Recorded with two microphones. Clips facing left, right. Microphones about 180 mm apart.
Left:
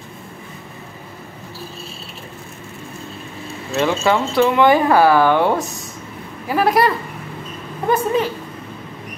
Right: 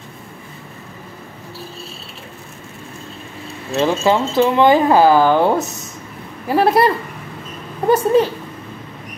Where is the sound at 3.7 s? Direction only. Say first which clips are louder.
Right 2 dB; 25° right (ahead or behind).